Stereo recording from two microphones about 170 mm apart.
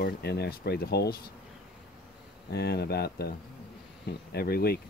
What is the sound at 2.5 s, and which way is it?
Speech, 70° left (ahead or behind).